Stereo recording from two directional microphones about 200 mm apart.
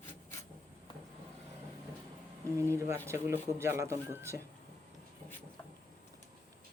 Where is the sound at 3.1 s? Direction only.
15° right (ahead or behind).